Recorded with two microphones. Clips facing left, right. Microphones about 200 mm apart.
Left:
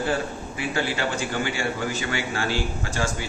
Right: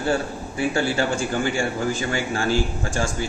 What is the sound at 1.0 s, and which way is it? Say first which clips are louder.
A man's voice: right 4 dB; 45° right (ahead or behind).